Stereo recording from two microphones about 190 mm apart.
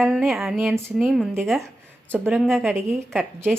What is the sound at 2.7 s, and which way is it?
Speech, 15° right (ahead or behind).